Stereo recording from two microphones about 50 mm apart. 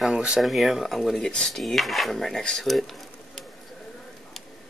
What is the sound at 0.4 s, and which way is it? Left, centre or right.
Speech, centre.